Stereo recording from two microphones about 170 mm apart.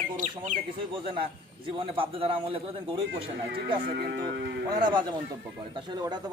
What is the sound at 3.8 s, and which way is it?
Speech, 70° right (ahead or behind).